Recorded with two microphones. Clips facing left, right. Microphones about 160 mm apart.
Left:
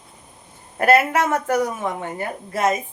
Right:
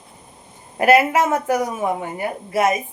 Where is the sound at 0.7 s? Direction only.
10° right (ahead or behind).